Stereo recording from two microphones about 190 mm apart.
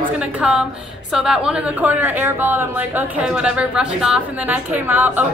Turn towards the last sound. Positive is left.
turn(degrees=-10)  # may be behind; listen again after turning